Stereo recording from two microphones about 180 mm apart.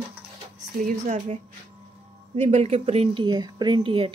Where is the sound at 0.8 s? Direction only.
40° right (ahead or behind).